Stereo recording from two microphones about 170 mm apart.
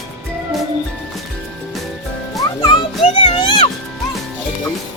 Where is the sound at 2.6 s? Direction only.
25° left (ahead or behind).